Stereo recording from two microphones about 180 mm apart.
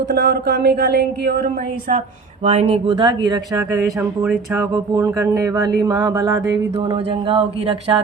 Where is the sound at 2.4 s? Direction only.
35° right (ahead or behind); by 6.6 s 20° right (ahead or behind).